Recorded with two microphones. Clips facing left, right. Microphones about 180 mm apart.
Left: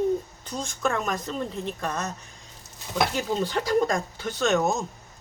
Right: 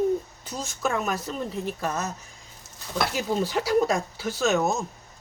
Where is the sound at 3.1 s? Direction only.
10° right (ahead or behind).